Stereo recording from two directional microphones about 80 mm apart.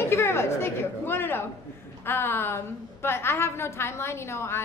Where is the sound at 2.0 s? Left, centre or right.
Left.